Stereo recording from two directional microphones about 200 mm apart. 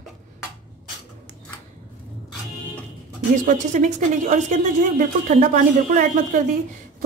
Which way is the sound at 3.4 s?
40° right (ahead or behind).